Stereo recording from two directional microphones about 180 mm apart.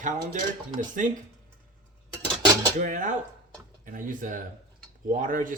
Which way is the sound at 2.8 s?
45° right (ahead or behind).